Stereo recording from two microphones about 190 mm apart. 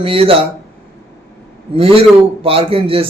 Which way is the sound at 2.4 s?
30° right (ahead or behind).